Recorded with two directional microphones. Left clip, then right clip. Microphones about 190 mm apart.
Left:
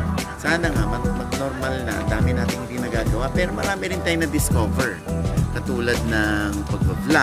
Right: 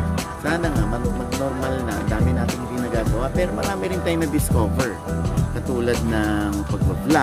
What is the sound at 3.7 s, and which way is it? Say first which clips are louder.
Music: even; 15° right (ahead or behind).